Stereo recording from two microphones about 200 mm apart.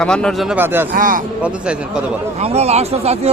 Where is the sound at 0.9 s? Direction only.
45° right (ahead or behind).